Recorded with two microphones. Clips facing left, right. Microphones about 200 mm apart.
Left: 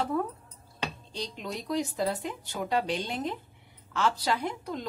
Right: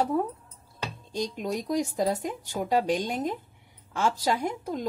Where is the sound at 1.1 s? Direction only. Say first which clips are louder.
Right 11 dB; 45° right (ahead or behind).